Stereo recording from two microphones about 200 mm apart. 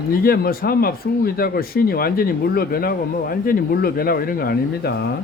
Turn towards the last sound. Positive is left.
turn(degrees=50)  # may be behind; listen again after turning